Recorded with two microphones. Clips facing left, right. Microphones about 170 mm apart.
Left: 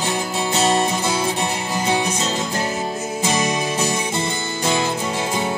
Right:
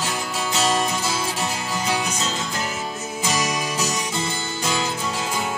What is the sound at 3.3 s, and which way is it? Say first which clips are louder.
Music: left 3 dB; 30° left (ahead or behind).